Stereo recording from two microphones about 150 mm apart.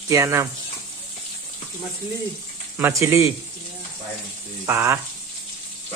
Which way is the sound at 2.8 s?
15° right (ahead or behind).